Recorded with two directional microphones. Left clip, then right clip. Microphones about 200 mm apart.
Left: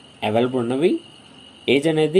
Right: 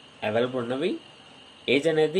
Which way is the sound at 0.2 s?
20° left (ahead or behind).